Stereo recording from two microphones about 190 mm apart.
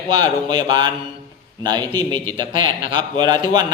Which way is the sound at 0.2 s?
25° right (ahead or behind).